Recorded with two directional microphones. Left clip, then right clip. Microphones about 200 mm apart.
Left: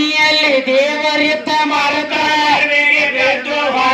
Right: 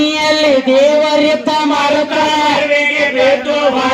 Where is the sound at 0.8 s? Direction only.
50° right (ahead or behind).